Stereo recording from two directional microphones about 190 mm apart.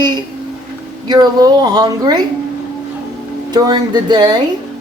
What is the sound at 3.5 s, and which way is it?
Speech, 20° right (ahead or behind).